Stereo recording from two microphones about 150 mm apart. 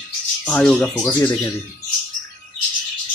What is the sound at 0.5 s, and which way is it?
Speech, 5° left (ahead or behind).